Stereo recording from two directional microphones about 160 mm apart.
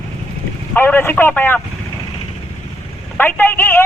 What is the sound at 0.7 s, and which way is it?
Speech, 10° left (ahead or behind).